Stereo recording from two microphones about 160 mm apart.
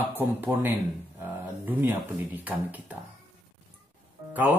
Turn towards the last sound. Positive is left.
turn(degrees=-10)  # may be behind; listen again after turning